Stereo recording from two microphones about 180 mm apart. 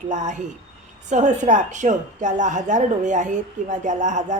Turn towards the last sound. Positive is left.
turn(degrees=-40)  # may be behind; listen again after turning